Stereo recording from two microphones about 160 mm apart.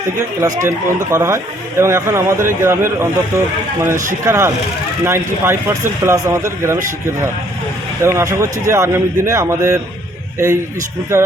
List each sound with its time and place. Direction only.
0.4 s a man's voice: 20° right (ahead or behind)
8.0 s a man's voice: 15° right (ahead or behind)